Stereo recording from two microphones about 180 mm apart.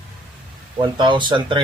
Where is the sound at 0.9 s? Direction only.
25° right (ahead or behind).